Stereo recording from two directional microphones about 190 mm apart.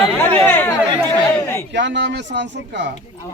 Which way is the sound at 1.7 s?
70° right (ahead or behind).